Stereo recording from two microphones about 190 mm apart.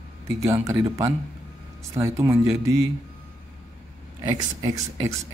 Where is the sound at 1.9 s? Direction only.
15° right (ahead or behind).